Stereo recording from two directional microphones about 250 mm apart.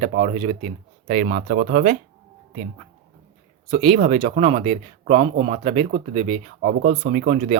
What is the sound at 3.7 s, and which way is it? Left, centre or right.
Speech, right.